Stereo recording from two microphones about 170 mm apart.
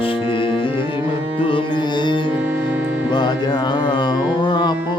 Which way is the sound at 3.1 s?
25° left (ahead or behind).